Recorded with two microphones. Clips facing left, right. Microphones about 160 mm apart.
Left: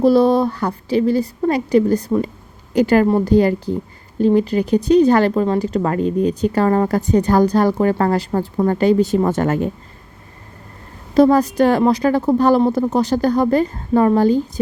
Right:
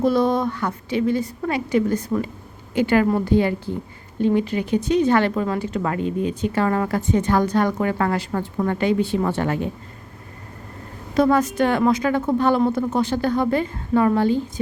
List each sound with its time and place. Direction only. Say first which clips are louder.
0.0 s speech: left 6 dB; 35° left (ahead or behind)
11.1 s speech: left 5 dB; 35° left (ahead or behind)